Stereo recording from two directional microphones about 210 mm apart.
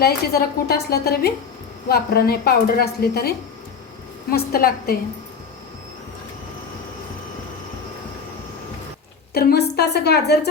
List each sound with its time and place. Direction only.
0.0 s a woman's voice: 50° left (ahead or behind)
9.3 s a woman's voice: 45° left (ahead or behind)